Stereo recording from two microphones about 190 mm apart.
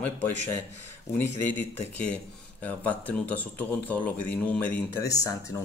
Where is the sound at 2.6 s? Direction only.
10° left (ahead or behind).